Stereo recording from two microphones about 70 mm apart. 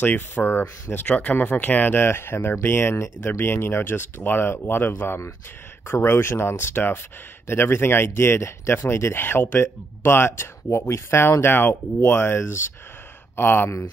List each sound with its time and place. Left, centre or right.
0.0 s speech: left
1.0 s speech: centre
1.3 s speech: left